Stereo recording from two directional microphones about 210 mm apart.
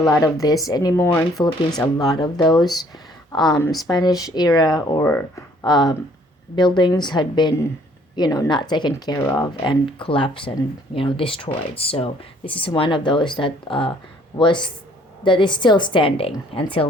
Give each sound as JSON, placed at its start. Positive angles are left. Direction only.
{"t": 0.0, "sound": "speech", "side_deg": 15}